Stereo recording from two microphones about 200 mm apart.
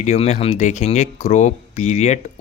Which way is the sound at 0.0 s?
35° left (ahead or behind).